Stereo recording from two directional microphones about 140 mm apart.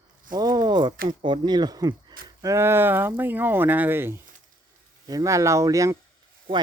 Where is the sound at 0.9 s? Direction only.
90° right.